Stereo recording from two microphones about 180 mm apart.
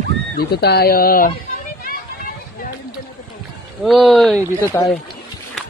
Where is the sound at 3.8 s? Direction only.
Centre (ahead or behind).